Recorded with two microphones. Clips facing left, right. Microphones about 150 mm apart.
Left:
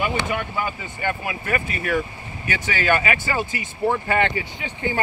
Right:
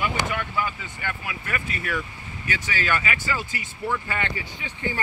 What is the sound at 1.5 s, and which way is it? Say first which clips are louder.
Speech: left 6 dB; 50° left (ahead or behind).